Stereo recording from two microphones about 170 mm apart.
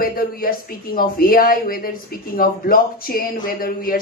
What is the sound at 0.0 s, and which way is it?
Speech, 60° left (ahead or behind).